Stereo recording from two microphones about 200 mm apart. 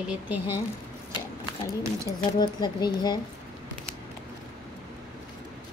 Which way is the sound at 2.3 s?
20° left (ahead or behind).